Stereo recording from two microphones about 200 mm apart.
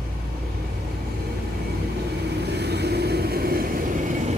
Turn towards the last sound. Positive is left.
turn(degrees=-50)  # may be behind; listen again after turning